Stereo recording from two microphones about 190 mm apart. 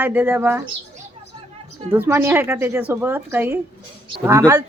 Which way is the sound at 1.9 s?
10° right (ahead or behind).